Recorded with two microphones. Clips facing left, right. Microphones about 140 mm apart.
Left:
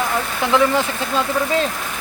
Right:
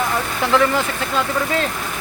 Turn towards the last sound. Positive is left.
turn(degrees=15)  # may be behind; listen again after turning